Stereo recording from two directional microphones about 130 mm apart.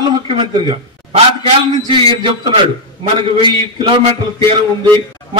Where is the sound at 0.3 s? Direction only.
45° right (ahead or behind).